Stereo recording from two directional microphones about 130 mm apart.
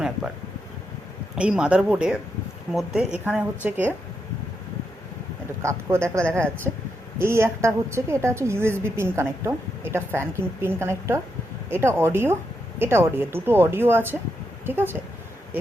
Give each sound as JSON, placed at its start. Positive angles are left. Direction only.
{"t": 1.4, "sound": "speech", "side_deg": -10}
{"t": 6.2, "sound": "speech", "side_deg": 10}
{"t": 7.2, "sound": "a woman's voice", "side_deg": -20}